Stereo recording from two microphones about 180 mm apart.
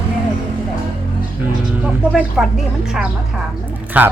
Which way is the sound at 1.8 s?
5° right (ahead or behind).